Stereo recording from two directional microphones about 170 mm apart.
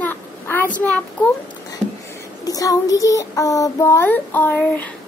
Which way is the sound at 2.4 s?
20° left (ahead or behind).